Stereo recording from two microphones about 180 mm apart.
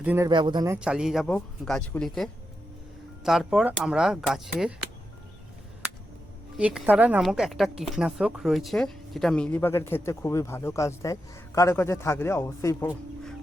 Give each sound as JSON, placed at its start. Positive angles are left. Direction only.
{"t": 0.0, "sound": "speech", "side_deg": -10}
{"t": 0.3, "sound": "speech", "side_deg": -25}
{"t": 0.8, "sound": "speech", "side_deg": -5}
{"t": 6.6, "sound": "speech", "side_deg": -5}